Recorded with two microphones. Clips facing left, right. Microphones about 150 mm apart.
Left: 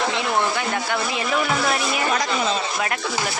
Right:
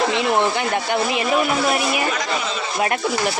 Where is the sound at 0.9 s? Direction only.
25° right (ahead or behind).